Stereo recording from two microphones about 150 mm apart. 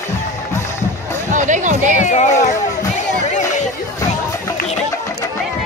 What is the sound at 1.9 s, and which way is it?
Music, 55° left (ahead or behind).